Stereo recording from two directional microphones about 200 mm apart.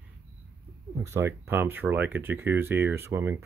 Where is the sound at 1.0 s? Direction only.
10° right (ahead or behind).